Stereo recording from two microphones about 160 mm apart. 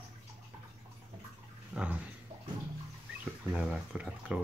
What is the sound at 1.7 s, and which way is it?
Speech, 10° right (ahead or behind).